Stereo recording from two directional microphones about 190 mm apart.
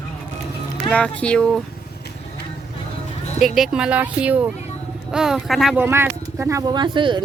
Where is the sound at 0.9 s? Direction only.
5° left (ahead or behind).